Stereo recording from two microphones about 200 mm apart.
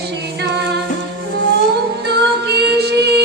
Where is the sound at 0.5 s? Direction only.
55° right (ahead or behind).